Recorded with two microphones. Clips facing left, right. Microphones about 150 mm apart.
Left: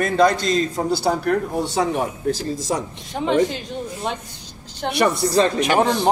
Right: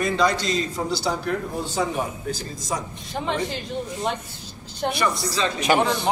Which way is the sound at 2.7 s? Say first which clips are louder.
Left 4 dB; 55° left (ahead or behind).